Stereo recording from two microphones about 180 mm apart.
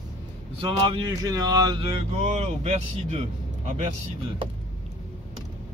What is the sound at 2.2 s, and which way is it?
Speech, 35° right (ahead or behind).